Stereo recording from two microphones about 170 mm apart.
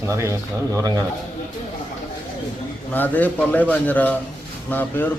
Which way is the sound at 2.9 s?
10° left (ahead or behind).